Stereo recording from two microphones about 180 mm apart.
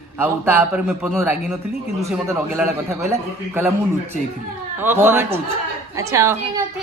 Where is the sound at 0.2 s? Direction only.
10° right (ahead or behind).